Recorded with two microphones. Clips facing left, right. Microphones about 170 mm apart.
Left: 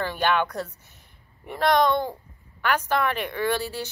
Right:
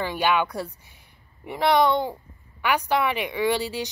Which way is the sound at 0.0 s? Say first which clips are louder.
Right 1 dB; 10° right (ahead or behind).